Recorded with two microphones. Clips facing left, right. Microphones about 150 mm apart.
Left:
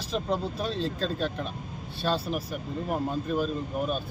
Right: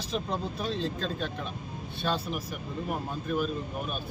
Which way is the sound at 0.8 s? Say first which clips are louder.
Left 3 dB; 35° left (ahead or behind).